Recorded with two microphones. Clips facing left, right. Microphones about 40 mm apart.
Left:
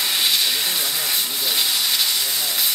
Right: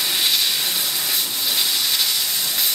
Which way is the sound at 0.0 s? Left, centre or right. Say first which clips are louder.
Even; centre.